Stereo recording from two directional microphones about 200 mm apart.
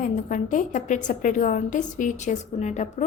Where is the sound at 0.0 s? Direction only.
40° left (ahead or behind).